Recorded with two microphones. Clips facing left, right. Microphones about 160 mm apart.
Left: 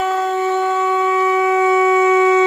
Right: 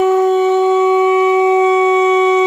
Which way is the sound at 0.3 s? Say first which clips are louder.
Right 6 dB; 20° right (ahead or behind).